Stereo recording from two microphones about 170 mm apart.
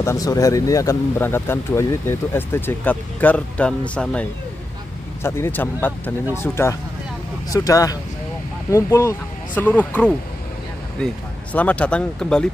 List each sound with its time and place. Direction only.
0.0 s speech: 20° left (ahead or behind)
11.5 s speech: 10° left (ahead or behind)